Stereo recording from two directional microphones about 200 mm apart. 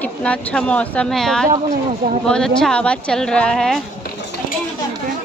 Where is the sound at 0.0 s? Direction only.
5° left (ahead or behind).